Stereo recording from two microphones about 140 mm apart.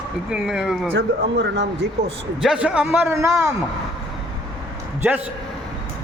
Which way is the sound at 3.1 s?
20° right (ahead or behind).